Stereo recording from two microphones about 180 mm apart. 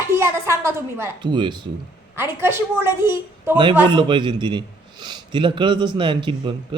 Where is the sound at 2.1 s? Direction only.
15° right (ahead or behind).